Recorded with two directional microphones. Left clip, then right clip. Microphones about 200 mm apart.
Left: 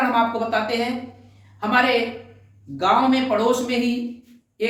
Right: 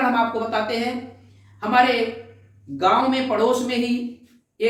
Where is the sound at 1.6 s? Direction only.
25° left (ahead or behind).